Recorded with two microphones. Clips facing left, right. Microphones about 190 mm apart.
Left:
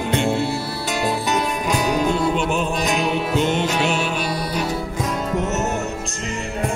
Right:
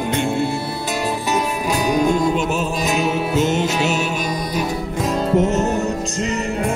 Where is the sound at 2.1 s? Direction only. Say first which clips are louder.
Right 2 dB; 45° right (ahead or behind).